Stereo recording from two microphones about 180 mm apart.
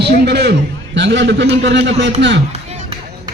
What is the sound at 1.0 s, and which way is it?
A man's voice, 80° right.